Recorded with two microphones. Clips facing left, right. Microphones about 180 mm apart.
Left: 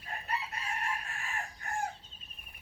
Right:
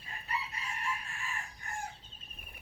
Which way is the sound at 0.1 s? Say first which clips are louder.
Left 2 dB; 55° left (ahead or behind).